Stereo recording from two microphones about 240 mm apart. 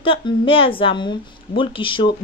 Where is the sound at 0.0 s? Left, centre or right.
Left.